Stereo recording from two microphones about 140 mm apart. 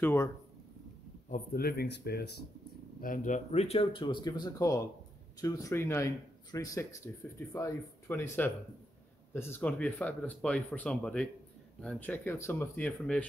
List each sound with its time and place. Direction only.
0.0 s speech: 20° left (ahead or behind)
1.3 s a man's voice: 90° left
3.0 s speech: 70° left (ahead or behind); by 8.3 s 15° left (ahead or behind)
9.3 s speech: 15° left (ahead or behind)